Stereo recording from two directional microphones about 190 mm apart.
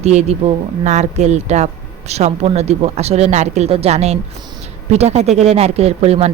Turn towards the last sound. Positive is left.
turn(degrees=-35)  # may be behind; listen again after turning